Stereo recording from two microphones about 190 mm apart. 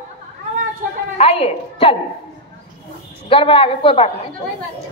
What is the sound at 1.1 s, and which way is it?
Speech, 30° left (ahead or behind).